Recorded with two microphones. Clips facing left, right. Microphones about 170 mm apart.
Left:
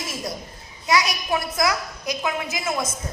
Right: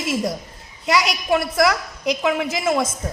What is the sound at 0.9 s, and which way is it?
A woman's voice, 75° right (ahead or behind).